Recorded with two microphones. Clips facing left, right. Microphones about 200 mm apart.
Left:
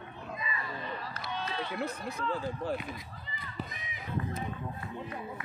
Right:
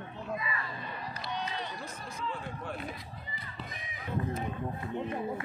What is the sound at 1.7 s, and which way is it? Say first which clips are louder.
Speech: left 7 dB; 65° left (ahead or behind).